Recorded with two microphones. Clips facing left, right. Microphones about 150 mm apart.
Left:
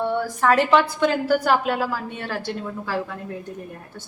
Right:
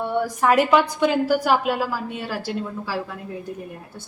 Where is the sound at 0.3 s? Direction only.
10° right (ahead or behind).